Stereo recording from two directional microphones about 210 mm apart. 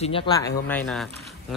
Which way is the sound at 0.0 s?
25° left (ahead or behind).